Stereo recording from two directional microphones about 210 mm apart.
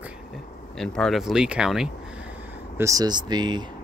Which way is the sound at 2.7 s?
15° right (ahead or behind).